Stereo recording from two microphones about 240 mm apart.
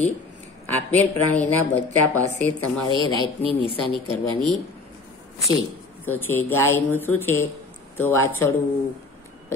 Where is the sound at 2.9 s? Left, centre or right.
Right.